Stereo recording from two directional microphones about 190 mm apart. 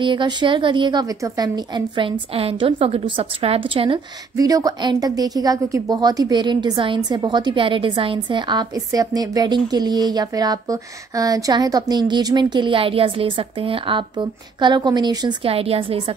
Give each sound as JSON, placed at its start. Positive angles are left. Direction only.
{"t": 0.0, "sound": "a woman's voice", "side_deg": -25}